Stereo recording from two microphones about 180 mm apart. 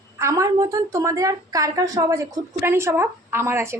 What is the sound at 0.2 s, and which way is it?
A woman's voice, 15° right (ahead or behind).